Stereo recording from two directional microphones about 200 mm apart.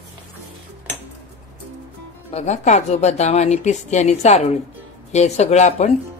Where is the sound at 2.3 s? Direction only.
35° left (ahead or behind).